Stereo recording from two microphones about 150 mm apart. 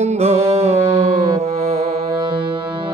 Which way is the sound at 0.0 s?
45° right (ahead or behind).